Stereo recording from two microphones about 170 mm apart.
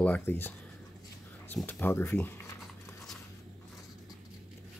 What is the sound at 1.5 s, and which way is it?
Speech, 10° left (ahead or behind).